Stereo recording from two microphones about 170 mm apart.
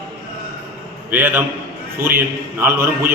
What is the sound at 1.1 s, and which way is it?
A man's voice, 10° right (ahead or behind).